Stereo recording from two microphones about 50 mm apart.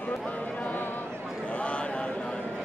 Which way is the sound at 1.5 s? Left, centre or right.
Left.